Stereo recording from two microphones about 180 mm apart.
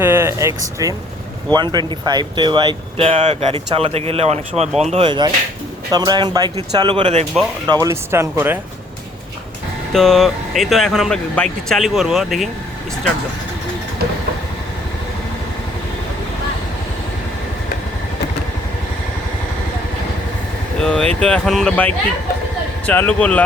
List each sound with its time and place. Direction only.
0.0 s speech: 15° right (ahead or behind); by 7.3 s 35° right (ahead or behind)
7.7 s speech: 20° right (ahead or behind)
9.9 s speech: centre (ahead or behind)
20.7 s vehicle: 5° left (ahead or behind)
21.2 s speech: 5° left (ahead or behind)